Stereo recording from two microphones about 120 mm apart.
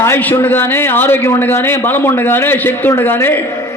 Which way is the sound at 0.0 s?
15° left (ahead or behind).